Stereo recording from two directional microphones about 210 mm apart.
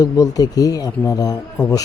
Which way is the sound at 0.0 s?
15° left (ahead or behind).